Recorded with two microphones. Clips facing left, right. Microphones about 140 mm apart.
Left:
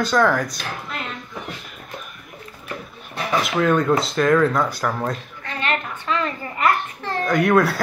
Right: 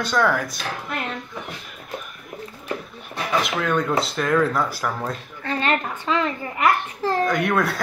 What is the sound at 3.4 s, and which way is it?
A child's voice, centre (ahead or behind).